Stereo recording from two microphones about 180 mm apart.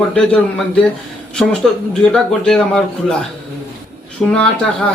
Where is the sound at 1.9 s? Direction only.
5° left (ahead or behind).